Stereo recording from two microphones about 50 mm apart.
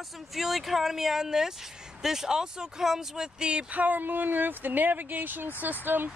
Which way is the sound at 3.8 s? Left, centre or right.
Right.